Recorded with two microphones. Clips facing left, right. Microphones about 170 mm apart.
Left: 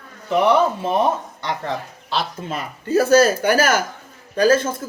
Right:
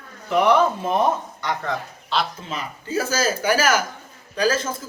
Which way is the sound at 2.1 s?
45° left (ahead or behind).